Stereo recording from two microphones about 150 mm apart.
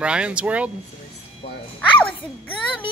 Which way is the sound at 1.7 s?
5° left (ahead or behind).